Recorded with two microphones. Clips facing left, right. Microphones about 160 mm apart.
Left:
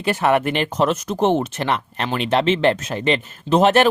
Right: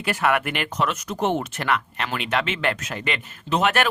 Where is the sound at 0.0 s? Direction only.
30° left (ahead or behind).